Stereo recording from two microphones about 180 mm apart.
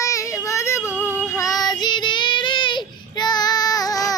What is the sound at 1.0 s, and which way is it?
Music, 10° right (ahead or behind).